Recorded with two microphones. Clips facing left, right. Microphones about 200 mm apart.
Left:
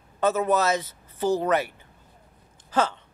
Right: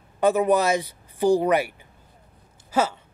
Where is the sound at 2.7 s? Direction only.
10° right (ahead or behind).